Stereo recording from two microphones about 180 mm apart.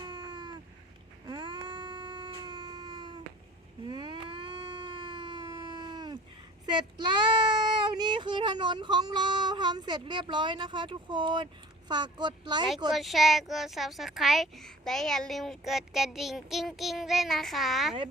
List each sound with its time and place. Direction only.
0.0 s a sound: 25° right (ahead or behind)
6.7 s speech: 25° right (ahead or behind)
12.9 s a woman's voice: centre (ahead or behind)